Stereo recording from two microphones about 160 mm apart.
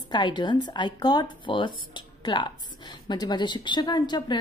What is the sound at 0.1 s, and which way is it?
A woman's voice, 30° left (ahead or behind).